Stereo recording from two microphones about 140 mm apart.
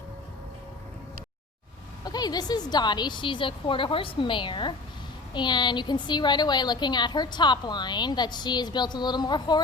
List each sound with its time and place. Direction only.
2.0 s a woman's voice: 30° left (ahead or behind)